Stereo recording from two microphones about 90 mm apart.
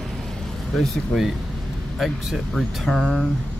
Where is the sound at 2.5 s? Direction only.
5° left (ahead or behind).